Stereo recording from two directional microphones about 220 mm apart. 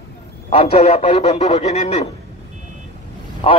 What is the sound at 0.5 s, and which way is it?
A man's voice, 30° left (ahead or behind).